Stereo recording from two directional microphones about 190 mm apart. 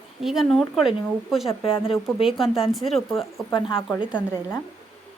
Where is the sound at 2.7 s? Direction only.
Centre (ahead or behind).